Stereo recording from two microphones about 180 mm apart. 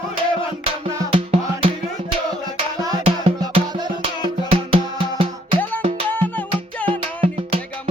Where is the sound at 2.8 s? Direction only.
20° right (ahead or behind).